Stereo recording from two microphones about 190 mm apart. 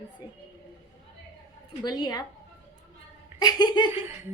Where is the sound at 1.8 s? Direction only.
20° left (ahead or behind).